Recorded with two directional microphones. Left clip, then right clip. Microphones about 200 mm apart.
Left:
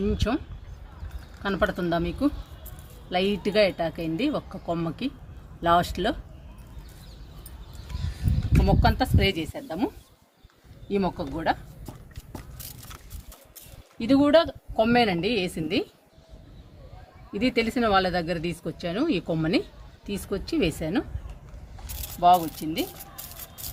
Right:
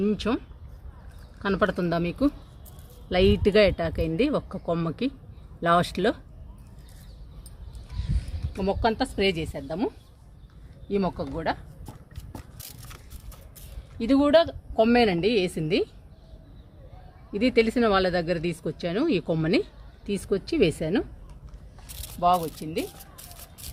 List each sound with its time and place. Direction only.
0.0 s speech: 50° right (ahead or behind)
1.4 s speech: 55° right (ahead or behind)
8.6 s speech: 50° right (ahead or behind)
12.3 s a sound: 10° right (ahead or behind)
14.0 s speech: 45° right (ahead or behind)
17.3 s speech: 50° right (ahead or behind)
22.2 s speech: 50° right (ahead or behind)